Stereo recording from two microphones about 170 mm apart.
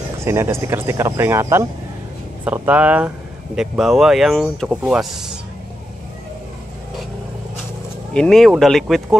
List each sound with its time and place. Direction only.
0.2 s speech: 15° right (ahead or behind)
8.1 s speech: 5° left (ahead or behind)